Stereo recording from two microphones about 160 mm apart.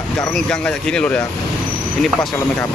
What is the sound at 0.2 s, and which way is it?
Speech, 5° left (ahead or behind).